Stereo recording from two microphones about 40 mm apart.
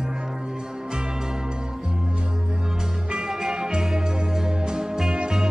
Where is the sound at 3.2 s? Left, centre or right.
Centre.